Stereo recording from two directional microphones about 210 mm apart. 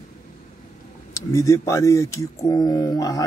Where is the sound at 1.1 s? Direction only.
15° left (ahead or behind).